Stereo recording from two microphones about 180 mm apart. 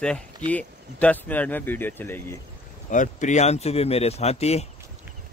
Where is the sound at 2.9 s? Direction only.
45° left (ahead or behind).